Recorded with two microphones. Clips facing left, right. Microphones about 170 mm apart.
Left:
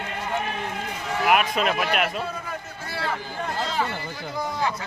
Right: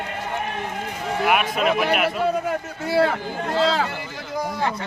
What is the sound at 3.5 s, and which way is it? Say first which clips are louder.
Speech: right 7 dB; 90° right.